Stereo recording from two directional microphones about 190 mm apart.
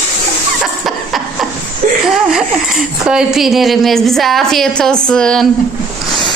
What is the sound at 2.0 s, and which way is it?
A woman's voice, centre (ahead or behind).